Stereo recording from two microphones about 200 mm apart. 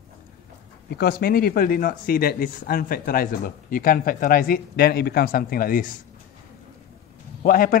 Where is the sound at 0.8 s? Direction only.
50° left (ahead or behind).